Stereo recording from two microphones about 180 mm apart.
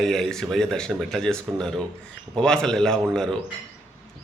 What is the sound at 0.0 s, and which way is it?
Speech, centre (ahead or behind).